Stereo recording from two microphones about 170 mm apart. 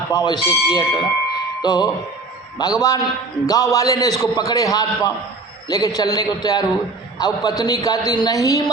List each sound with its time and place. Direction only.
0.1 s a man's voice: 25° left (ahead or behind)